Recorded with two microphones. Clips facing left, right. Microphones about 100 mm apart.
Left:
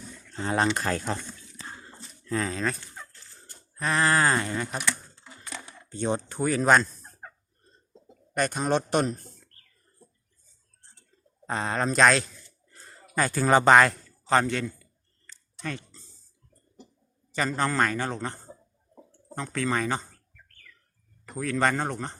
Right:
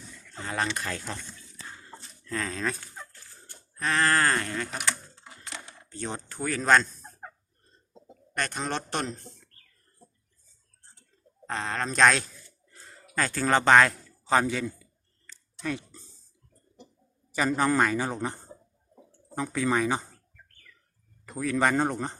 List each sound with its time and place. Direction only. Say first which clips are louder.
0.3 s speech: left 5 dB; 30° left (ahead or behind)
2.3 s speech: left 3 dB; 5° left (ahead or behind)
3.8 s speech: left 1 dB; 5° left (ahead or behind)
5.9 s speech: left 8 dB; 20° left (ahead or behind)
8.3 s speech: left 6 dB; 15° left (ahead or behind)
11.4 s speech: left 3 dB; 15° left (ahead or behind)
11.9 s speech: left 1 dB; centre (ahead or behind)
12.8 s bird: left 1 dB; centre (ahead or behind)
13.1 s a man's voice: left 3 dB; 10° left (ahead or behind); by 14.8 s 5° right (ahead or behind)
15.6 s a sound: right 3 dB; 10° right (ahead or behind)
17.3 s speech: right 2 dB; 10° right (ahead or behind)
21.3 s speech: right 1 dB; 10° right (ahead or behind)